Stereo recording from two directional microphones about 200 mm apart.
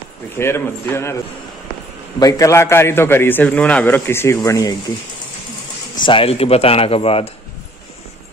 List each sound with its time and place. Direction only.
0.4 s a man's voice: 10° left (ahead or behind)
2.1 s a man's voice: 15° left (ahead or behind)
6.0 s speech: 30° left (ahead or behind)